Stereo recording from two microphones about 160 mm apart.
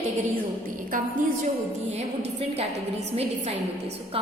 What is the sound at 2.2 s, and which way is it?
A woman's voice, 40° right (ahead or behind).